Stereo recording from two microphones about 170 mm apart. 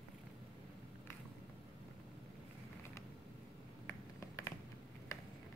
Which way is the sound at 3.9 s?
15° left (ahead or behind).